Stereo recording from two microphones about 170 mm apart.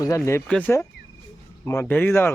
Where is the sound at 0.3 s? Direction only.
15° left (ahead or behind).